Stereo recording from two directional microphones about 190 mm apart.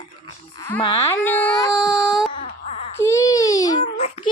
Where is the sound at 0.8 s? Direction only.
20° left (ahead or behind).